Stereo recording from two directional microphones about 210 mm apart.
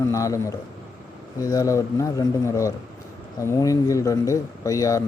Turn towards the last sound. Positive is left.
turn(degrees=15)  # may be behind; listen again after turning